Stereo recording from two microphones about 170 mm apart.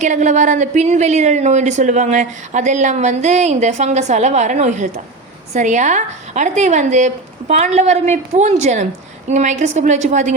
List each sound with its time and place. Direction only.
0.0 s a woman's voice: 45° right (ahead or behind)